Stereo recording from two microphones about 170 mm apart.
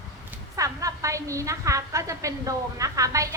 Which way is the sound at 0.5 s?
20° right (ahead or behind).